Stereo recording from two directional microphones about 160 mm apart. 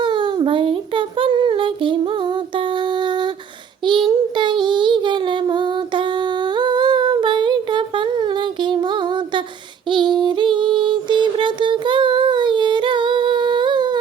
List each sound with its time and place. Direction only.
0.0 s child singing: 30° right (ahead or behind)
9.9 s music: 30° right (ahead or behind)